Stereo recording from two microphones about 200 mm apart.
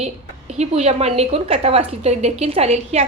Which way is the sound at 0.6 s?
35° right (ahead or behind).